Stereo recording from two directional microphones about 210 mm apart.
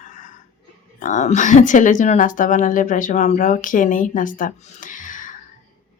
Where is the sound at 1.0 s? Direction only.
35° left (ahead or behind).